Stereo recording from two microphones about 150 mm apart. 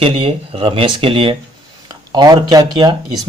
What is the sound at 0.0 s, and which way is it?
Speech, 35° right (ahead or behind).